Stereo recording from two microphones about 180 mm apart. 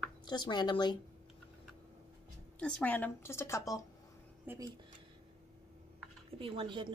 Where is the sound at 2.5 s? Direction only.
5° left (ahead or behind).